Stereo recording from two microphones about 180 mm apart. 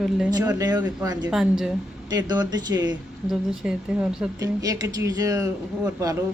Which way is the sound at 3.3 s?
5° right (ahead or behind).